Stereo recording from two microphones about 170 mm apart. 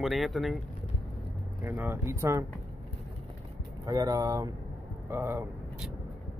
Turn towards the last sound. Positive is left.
turn(degrees=-15)  # may be behind; listen again after turning